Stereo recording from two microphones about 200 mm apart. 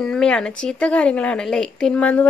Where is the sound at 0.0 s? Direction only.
5° left (ahead or behind).